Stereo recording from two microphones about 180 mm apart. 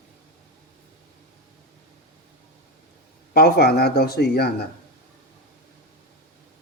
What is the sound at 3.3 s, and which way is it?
Speech, 60° left (ahead or behind).